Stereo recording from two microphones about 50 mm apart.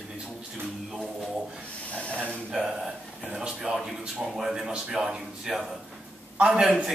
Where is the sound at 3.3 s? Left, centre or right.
Centre.